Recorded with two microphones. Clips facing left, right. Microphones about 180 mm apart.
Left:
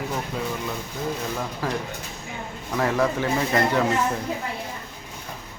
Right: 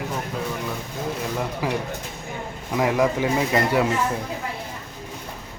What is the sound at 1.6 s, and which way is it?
Speech, 15° right (ahead or behind).